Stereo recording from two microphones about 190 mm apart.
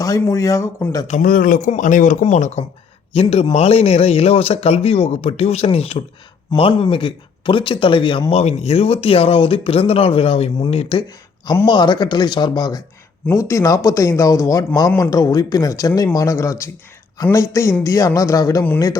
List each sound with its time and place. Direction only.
0.0 s speech: 15° left (ahead or behind)
1.0 s speech: 45° left (ahead or behind); by 18.9 s 15° left (ahead or behind)